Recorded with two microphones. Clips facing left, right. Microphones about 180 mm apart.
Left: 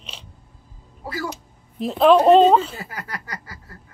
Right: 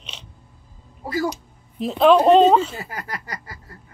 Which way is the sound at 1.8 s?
Centre (ahead or behind).